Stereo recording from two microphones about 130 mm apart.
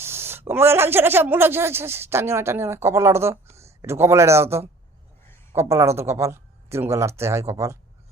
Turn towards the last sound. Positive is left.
turn(degrees=-20)  # may be behind; listen again after turning